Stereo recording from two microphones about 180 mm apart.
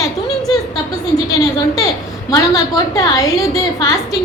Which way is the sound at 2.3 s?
20° left (ahead or behind).